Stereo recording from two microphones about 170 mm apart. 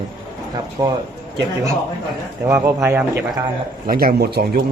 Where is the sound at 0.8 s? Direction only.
30° right (ahead or behind).